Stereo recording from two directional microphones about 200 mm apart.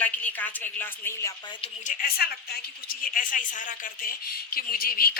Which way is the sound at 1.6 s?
40° left (ahead or behind).